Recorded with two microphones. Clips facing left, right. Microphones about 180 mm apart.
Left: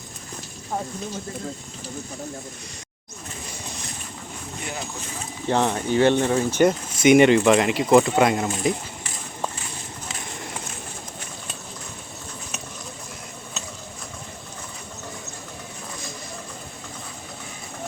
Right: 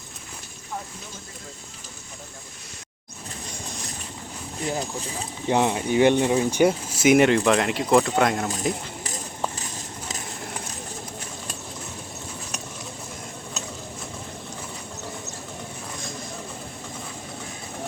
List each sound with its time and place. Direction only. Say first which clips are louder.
4.6 s speech: right 6 dB; 35° right (ahead or behind)
5.5 s speech: even; 15° right (ahead or behind)